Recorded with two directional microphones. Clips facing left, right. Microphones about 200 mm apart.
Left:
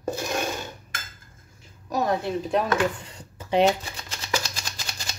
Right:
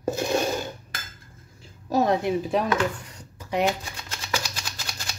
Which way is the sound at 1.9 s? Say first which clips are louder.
Right 3 dB; 20° right (ahead or behind).